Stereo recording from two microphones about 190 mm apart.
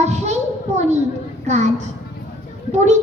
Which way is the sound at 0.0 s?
35° right (ahead or behind).